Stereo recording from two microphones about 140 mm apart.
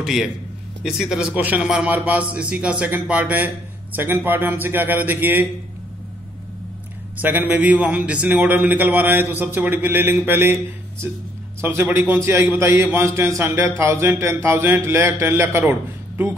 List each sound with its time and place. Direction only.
0.0 s a man's voice: 5° right (ahead or behind)
7.2 s a man's voice: 10° right (ahead or behind)